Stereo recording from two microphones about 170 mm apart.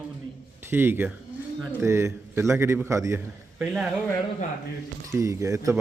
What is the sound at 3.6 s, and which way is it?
Speech, centre (ahead or behind).